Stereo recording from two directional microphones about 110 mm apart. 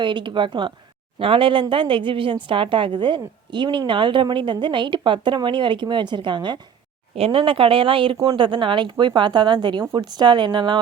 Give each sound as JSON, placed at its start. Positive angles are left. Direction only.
{"t": 0.0, "sound": "a woman's voice", "side_deg": -45}
{"t": 7.2, "sound": "a woman's voice", "side_deg": -55}